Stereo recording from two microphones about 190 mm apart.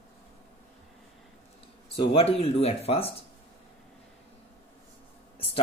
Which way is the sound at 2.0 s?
30° left (ahead or behind).